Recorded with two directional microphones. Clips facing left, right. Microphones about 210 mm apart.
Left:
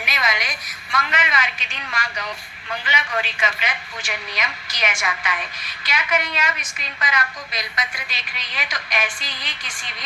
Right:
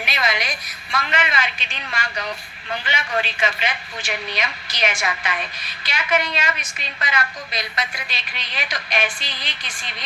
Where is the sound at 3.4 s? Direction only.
30° right (ahead or behind).